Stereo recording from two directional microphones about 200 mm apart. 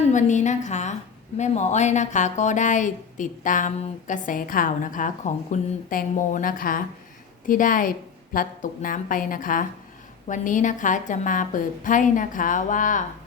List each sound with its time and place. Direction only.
0.1 s a woman's voice: 40° left (ahead or behind)